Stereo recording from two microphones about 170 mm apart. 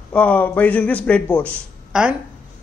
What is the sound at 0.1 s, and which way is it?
A man's voice, 10° left (ahead or behind).